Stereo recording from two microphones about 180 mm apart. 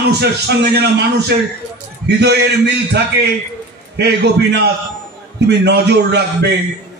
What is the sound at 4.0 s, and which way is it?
A man's voice, 70° right (ahead or behind).